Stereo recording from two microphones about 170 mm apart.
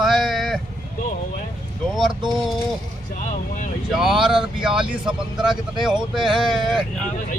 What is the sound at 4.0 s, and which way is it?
Speech, centre (ahead or behind).